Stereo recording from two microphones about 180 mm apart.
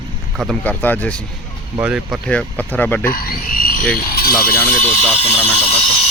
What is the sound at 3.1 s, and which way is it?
Speech, 50° left (ahead or behind).